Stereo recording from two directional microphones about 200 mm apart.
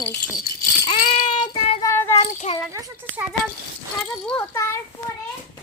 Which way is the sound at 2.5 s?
30° left (ahead or behind).